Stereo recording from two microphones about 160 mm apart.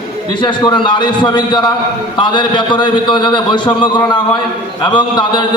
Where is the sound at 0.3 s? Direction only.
30° left (ahead or behind).